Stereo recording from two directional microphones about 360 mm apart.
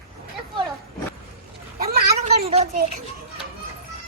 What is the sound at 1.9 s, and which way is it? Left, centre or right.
Cat, right.